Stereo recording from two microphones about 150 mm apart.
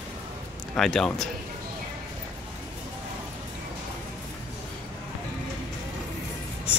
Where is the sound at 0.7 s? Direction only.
5° left (ahead or behind).